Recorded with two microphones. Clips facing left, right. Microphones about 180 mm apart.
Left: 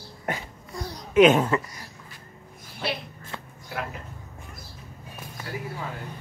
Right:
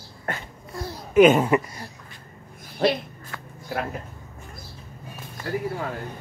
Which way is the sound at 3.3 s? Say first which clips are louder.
Left 1 dB; 25° left (ahead or behind).